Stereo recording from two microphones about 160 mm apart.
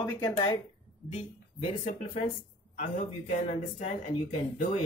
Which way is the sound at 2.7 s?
50° left (ahead or behind).